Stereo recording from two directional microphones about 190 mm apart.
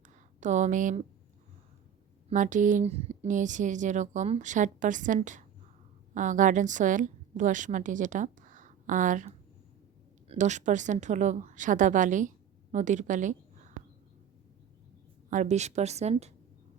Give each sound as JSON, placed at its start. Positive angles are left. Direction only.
{"t": 0.0, "sound": "a sound", "side_deg": -40}
{"t": 2.3, "sound": "a woman's voice", "side_deg": -40}
{"t": 15.3, "sound": "speech", "side_deg": -40}